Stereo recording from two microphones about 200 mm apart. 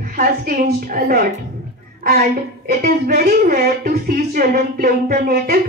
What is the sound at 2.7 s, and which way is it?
A woman's voice, 45° right (ahead or behind).